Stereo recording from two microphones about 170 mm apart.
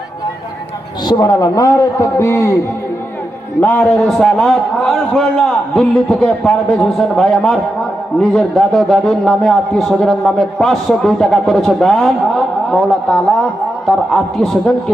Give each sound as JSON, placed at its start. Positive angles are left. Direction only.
{"t": 1.0, "sound": "a man's voice", "side_deg": 25}
{"t": 3.6, "sound": "a man's voice", "side_deg": 10}